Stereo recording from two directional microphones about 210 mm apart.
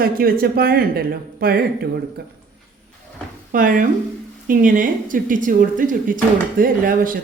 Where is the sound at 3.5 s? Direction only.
40° right (ahead or behind).